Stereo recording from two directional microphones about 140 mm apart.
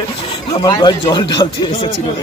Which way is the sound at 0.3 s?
35° left (ahead or behind).